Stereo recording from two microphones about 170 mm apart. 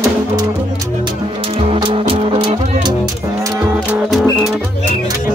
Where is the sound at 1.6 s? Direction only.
30° right (ahead or behind).